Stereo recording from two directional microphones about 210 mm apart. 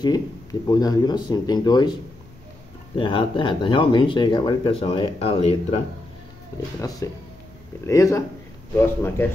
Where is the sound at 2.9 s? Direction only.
25° left (ahead or behind).